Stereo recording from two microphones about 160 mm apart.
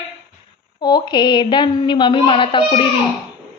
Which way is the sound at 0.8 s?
25° left (ahead or behind).